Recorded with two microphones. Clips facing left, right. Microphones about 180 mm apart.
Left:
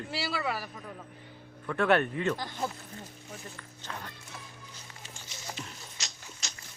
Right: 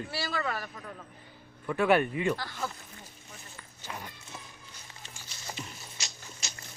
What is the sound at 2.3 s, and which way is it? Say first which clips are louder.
Speech: left 2 dB; 20° left (ahead or behind).